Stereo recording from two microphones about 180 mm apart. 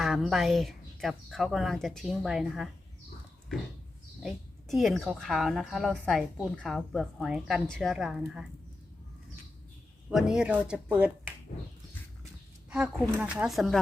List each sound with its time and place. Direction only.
0.0 s a woman's voice: centre (ahead or behind)
4.2 s a woman's voice: centre (ahead or behind)
10.1 s a woman's voice: centre (ahead or behind)
13.1 s a woman's voice: 5° right (ahead or behind)